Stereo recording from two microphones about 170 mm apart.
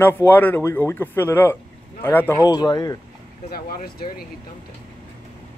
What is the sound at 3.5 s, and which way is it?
Speech, 65° left (ahead or behind).